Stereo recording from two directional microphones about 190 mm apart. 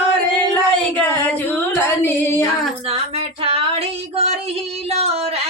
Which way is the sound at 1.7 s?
10° left (ahead or behind).